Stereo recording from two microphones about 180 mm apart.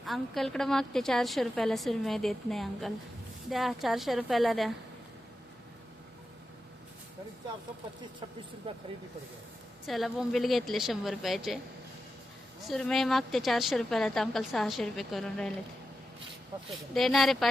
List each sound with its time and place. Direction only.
0.0 s a woman's voice: centre (ahead or behind)
8.7 s speech: 30° right (ahead or behind)
9.8 s a woman's voice: centre (ahead or behind)
12.6 s a woman's voice: centre (ahead or behind)
16.9 s a woman's voice: centre (ahead or behind)